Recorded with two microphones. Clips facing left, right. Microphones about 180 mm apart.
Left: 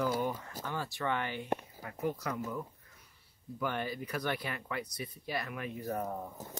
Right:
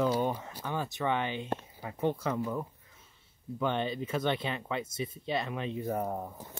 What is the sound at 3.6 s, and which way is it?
Speech, 25° right (ahead or behind).